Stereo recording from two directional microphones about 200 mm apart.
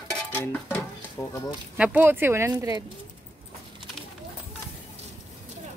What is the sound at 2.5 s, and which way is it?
Speech, 20° right (ahead or behind).